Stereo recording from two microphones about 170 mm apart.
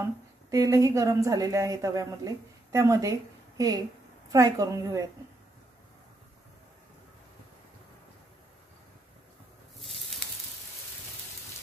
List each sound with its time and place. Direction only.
0.0 s a woman's voice: 20° right (ahead or behind)